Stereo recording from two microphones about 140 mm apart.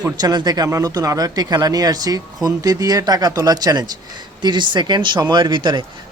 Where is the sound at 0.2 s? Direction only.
30° right (ahead or behind).